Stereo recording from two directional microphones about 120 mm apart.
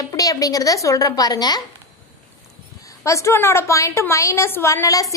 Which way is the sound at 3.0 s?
25° left (ahead or behind).